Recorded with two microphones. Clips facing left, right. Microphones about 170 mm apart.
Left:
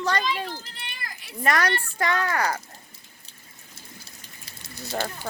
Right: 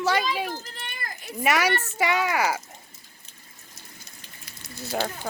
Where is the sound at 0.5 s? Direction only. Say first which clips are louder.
Right 3 dB; 45° right (ahead or behind).